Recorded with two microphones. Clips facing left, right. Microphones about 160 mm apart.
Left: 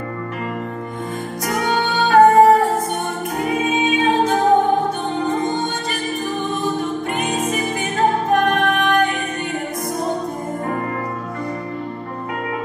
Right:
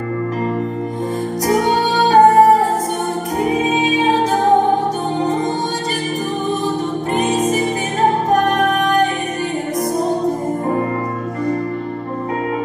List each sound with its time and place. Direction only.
1.5 s music: 35° right (ahead or behind)
7.2 s music: 40° right (ahead or behind)